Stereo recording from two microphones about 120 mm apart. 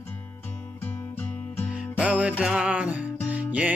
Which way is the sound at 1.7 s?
10° right (ahead or behind).